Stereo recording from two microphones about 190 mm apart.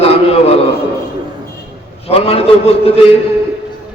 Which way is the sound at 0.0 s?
30° left (ahead or behind).